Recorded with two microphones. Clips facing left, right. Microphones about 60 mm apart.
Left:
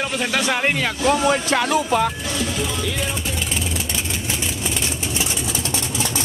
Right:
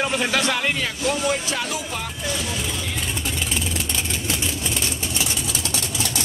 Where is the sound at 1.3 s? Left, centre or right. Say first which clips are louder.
Left 7 dB; left.